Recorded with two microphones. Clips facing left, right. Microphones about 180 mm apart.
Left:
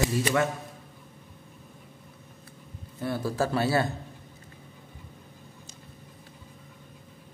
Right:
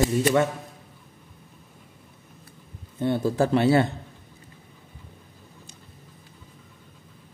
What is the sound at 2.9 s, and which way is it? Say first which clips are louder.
Speech: right 6 dB; 25° right (ahead or behind).